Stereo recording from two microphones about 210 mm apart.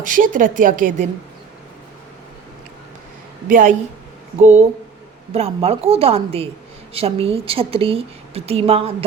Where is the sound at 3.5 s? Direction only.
40° right (ahead or behind).